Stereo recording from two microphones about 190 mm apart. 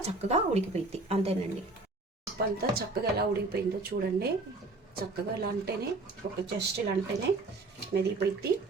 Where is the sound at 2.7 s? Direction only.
55° right (ahead or behind).